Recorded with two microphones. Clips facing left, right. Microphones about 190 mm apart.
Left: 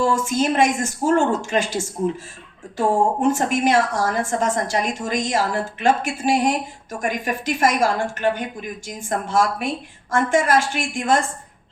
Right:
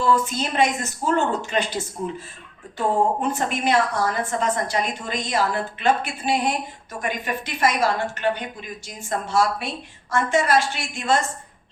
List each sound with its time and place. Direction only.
0.0 s a woman's voice: 45° left (ahead or behind)